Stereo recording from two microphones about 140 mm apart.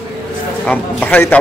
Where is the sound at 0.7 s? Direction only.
10° left (ahead or behind).